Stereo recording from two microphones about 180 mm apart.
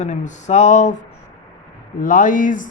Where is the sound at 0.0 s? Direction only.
40° left (ahead or behind).